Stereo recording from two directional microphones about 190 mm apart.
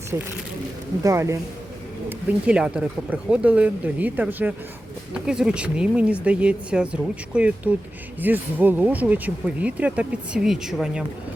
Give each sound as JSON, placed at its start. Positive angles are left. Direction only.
{"t": 0.1, "sound": "speech", "side_deg": -20}